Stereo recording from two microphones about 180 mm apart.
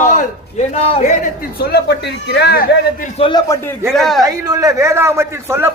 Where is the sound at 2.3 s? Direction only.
60° left (ahead or behind).